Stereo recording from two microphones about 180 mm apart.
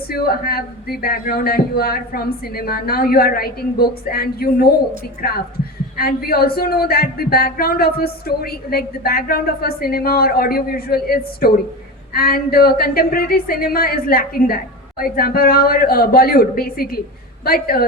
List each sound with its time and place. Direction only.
0.1 s a man's voice: 55° left (ahead or behind)